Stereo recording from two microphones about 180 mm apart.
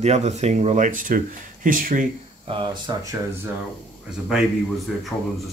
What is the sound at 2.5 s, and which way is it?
Speech, 25° right (ahead or behind).